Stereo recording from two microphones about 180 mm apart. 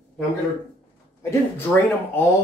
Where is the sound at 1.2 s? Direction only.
15° left (ahead or behind).